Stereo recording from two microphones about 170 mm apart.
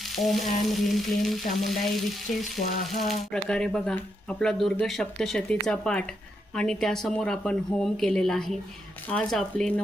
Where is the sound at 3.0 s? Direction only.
5° left (ahead or behind).